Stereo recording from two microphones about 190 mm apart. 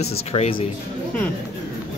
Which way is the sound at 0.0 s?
35° left (ahead or behind).